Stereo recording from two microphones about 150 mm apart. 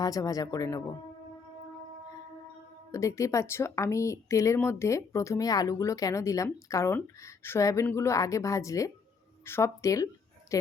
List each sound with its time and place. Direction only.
0.0 s speech: 25° left (ahead or behind)
2.9 s a woman's voice: 20° left (ahead or behind)